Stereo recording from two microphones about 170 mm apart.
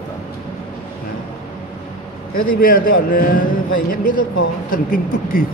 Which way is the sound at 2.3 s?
55° left (ahead or behind).